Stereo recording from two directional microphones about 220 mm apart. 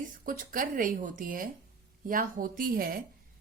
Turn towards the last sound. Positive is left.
turn(degrees=-40)  # may be behind; listen again after turning